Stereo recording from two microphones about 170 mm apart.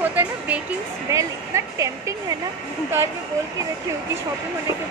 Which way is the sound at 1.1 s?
20° right (ahead or behind).